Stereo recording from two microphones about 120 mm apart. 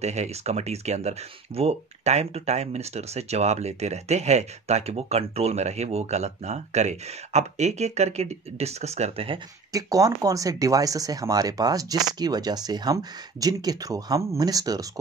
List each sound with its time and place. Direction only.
0.0 s speech: 65° right (ahead or behind)
9.7 s speech: 30° right (ahead or behind)